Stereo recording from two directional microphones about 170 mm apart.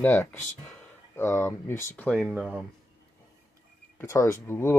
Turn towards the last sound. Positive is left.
turn(degrees=15)  # may be behind; listen again after turning